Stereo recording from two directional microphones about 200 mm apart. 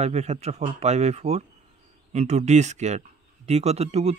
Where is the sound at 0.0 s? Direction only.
35° right (ahead or behind).